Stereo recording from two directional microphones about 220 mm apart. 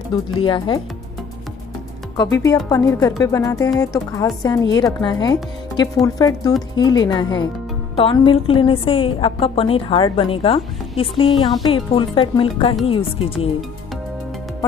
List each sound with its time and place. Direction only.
0.1 s a woman's voice: 20° left (ahead or behind)
2.1 s a woman's voice: 15° left (ahead or behind)